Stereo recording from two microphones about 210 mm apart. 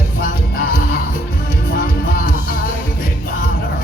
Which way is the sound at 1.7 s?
45° left (ahead or behind).